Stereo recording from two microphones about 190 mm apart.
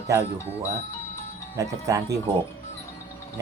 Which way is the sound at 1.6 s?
15° right (ahead or behind).